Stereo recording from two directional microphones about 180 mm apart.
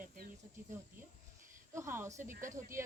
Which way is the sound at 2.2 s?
45° right (ahead or behind).